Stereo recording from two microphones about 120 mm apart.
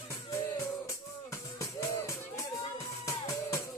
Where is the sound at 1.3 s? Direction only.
25° left (ahead or behind).